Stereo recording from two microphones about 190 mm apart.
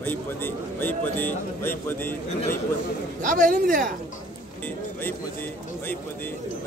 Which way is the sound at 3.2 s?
45° right (ahead or behind).